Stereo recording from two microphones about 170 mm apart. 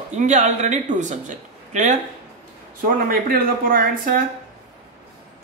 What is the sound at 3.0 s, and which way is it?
Speech, 60° right (ahead or behind).